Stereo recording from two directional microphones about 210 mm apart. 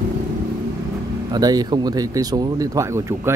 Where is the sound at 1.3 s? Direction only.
20° right (ahead or behind).